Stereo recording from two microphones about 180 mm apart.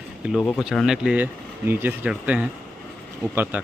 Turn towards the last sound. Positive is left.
turn(degrees=-10)  # may be behind; listen again after turning